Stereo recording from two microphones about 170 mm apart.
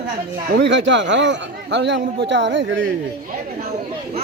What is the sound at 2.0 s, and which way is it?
Speech, 80° right.